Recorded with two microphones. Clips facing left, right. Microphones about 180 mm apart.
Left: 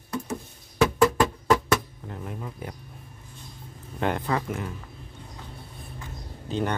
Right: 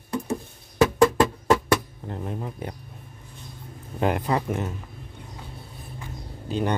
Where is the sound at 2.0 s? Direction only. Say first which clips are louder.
Right 4 dB; 30° right (ahead or behind).